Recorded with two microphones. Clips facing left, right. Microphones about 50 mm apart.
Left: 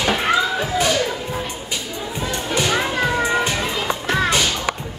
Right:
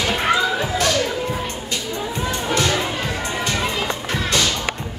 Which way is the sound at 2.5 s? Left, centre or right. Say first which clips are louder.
Left 1 dB; centre.